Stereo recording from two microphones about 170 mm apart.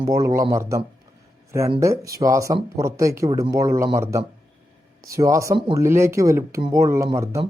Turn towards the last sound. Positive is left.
turn(degrees=-15)  # may be behind; listen again after turning